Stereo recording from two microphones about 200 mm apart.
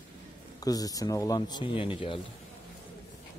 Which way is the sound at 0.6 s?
20° left (ahead or behind).